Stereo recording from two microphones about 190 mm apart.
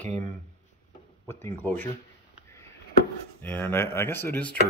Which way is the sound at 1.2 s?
15° left (ahead or behind).